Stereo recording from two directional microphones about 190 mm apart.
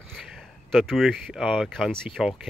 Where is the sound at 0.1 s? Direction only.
Centre (ahead or behind).